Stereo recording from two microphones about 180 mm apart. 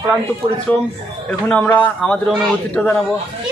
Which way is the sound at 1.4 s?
10° left (ahead or behind).